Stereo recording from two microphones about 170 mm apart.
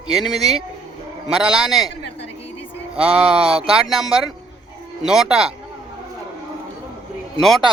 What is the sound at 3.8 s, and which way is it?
A man's voice, centre (ahead or behind).